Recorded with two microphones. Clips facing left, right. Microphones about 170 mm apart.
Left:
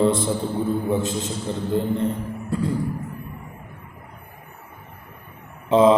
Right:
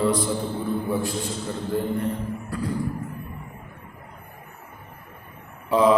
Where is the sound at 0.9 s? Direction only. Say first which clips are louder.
Left 3 dB; 20° left (ahead or behind).